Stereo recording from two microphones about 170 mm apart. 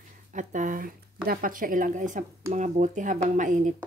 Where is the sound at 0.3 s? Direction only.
45° right (ahead or behind).